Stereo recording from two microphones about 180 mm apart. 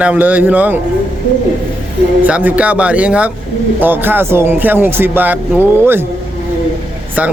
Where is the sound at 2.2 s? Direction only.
10° right (ahead or behind).